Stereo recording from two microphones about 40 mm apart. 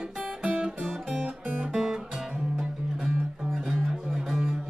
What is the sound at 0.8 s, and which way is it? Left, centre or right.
Music, centre.